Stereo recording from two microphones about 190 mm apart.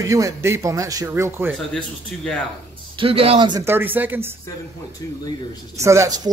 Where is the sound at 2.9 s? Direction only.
30° right (ahead or behind).